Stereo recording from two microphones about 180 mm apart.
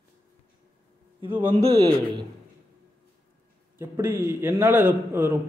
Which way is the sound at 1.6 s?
35° right (ahead or behind).